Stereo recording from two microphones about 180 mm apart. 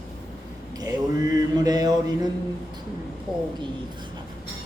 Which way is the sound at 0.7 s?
20° right (ahead or behind).